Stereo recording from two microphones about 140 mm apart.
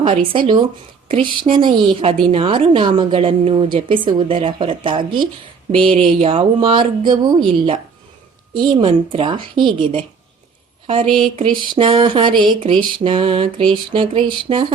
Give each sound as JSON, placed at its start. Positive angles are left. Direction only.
{"t": 0.0, "sound": "a woman's voice", "side_deg": -35}